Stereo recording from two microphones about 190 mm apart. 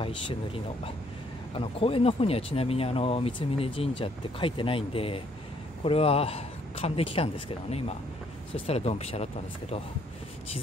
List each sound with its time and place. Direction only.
0.0 s a man's voice: 30° left (ahead or behind)
8.6 s speech: 35° left (ahead or behind)